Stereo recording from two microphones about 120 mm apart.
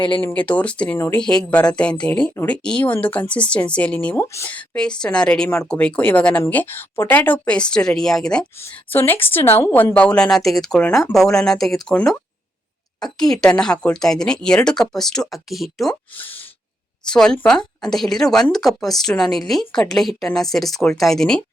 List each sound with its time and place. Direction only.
0.2 s speech: 15° left (ahead or behind)
4.5 s speech: 10° left (ahead or behind)
8.5 s speech: 20° left (ahead or behind); by 16.0 s centre (ahead or behind)
17.1 s speech: 5° left (ahead or behind)